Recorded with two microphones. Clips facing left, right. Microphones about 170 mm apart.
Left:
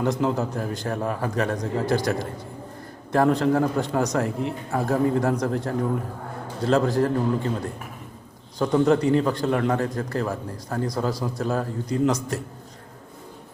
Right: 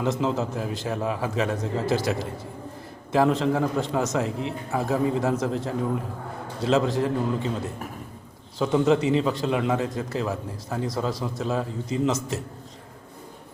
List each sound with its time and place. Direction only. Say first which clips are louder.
0.0 s a man's voice: left 2 dB; centre (ahead or behind)